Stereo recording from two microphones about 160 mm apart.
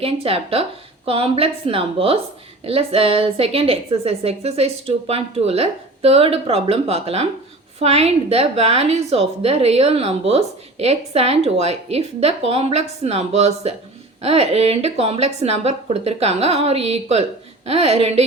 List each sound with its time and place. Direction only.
0.0 s a woman's voice: 35° right (ahead or behind)